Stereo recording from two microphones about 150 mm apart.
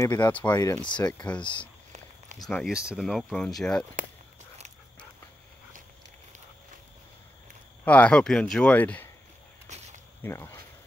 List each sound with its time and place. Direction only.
0.0 s speech: 25° left (ahead or behind)
2.3 s speech: centre (ahead or behind)
7.8 s speech: 10° left (ahead or behind)
9.7 s snake: 50° right (ahead or behind)
10.2 s speech: 15° left (ahead or behind)